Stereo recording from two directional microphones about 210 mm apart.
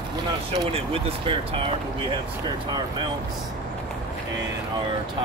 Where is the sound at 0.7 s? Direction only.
30° right (ahead or behind).